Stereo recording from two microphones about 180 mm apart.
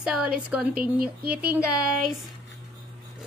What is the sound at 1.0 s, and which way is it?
Speech, 55° right (ahead or behind).